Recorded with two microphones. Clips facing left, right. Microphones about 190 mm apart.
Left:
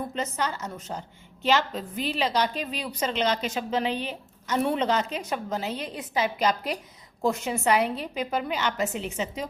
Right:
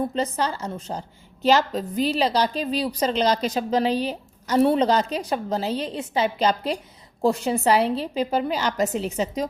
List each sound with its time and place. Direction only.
0.1 s a woman's voice: 35° right (ahead or behind)